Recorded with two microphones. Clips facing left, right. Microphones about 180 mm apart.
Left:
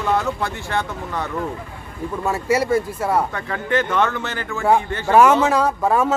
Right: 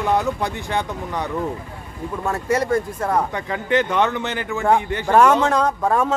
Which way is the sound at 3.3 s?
20° right (ahead or behind).